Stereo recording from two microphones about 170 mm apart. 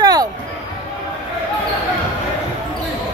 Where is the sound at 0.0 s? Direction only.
25° right (ahead or behind).